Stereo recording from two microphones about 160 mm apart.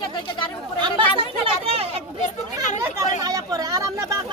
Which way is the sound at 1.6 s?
40° right (ahead or behind).